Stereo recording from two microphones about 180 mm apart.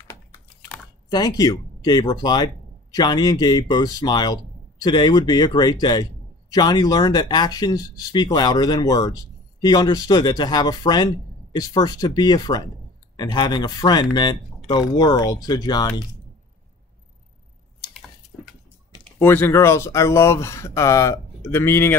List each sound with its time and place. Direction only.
1.1 s speech: 20° left (ahead or behind)
19.1 s speech: 10° left (ahead or behind)